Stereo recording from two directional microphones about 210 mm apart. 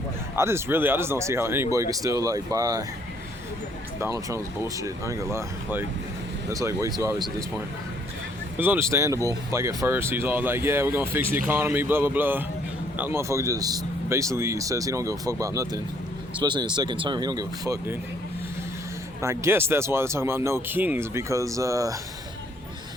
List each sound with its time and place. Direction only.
0.3 s speech: 10° right (ahead or behind)
4.0 s speech: 15° right (ahead or behind)
8.5 s speech: 10° right (ahead or behind)
19.2 s speech: 15° right (ahead or behind)